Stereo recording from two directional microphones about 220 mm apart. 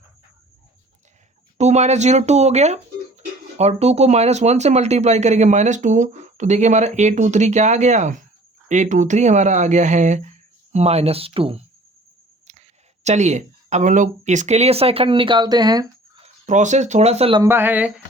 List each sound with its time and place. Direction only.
1.5 s speech: 30° right (ahead or behind)
12.5 s a sound: 30° right (ahead or behind)
13.1 s speech: 30° right (ahead or behind)
16.5 s speech: 35° right (ahead or behind)
17.4 s speech: 10° right (ahead or behind)